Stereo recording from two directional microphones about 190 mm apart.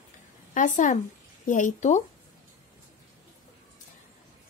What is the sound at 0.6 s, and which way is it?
Speech, 40° left (ahead or behind).